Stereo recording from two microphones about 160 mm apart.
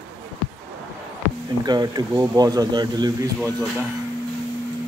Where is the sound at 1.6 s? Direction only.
25° right (ahead or behind).